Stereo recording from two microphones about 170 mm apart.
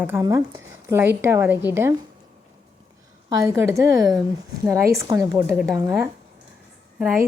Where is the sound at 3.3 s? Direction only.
15° right (ahead or behind).